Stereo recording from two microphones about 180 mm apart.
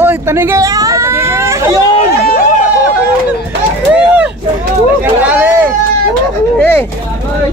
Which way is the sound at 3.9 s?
10° right (ahead or behind).